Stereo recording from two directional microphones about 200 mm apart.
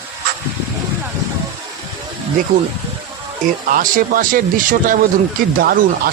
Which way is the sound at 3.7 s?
45° right (ahead or behind).